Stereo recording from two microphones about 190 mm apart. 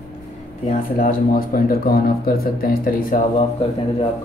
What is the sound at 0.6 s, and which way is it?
Speech, 50° left (ahead or behind).